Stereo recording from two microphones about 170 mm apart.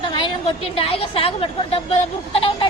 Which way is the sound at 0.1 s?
30° left (ahead or behind).